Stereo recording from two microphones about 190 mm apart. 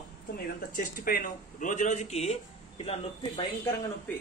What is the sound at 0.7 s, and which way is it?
Speech, 50° left (ahead or behind).